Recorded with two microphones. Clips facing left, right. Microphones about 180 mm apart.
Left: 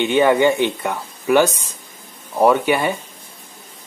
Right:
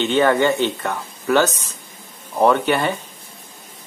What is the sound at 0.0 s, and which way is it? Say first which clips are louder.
Speech: left 2 dB; 15° left (ahead or behind).